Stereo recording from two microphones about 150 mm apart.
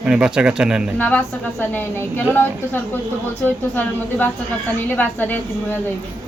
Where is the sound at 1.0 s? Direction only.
10° left (ahead or behind).